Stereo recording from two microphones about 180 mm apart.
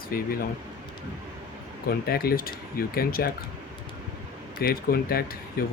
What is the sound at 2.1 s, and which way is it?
Speech, 55° left (ahead or behind).